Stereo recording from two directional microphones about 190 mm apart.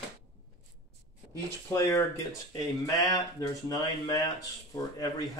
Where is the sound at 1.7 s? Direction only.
15° left (ahead or behind).